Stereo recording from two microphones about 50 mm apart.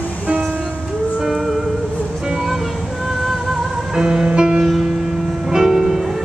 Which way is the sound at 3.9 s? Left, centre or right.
Centre.